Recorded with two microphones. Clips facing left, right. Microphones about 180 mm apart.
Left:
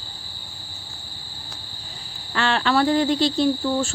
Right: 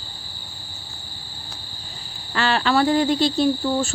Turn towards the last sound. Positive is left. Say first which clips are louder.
# right 1 dB
turn(degrees=-10)  # may be behind; listen again after turning